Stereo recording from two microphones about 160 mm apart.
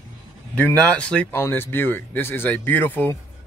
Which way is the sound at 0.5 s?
10° left (ahead or behind).